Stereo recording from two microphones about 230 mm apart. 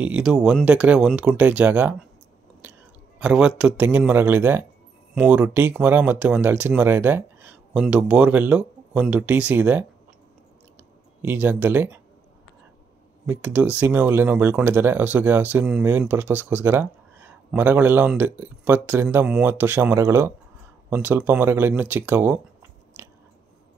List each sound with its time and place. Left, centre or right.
0.0 s speech: centre
3.2 s speech: centre
11.2 s speech: centre
13.3 s speech: centre